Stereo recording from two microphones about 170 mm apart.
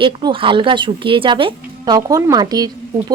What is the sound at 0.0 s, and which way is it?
A woman's voice, 30° right (ahead or behind).